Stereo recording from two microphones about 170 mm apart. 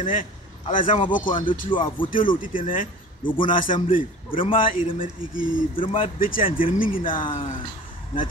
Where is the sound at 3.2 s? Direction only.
30° left (ahead or behind).